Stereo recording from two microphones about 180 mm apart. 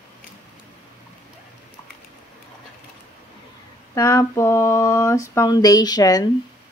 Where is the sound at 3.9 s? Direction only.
15° left (ahead or behind).